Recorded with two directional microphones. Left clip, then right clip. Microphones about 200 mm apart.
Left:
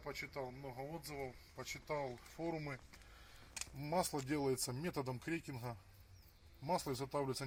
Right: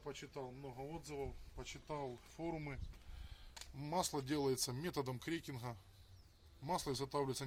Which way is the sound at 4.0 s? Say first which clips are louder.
Even; 35° left (ahead or behind).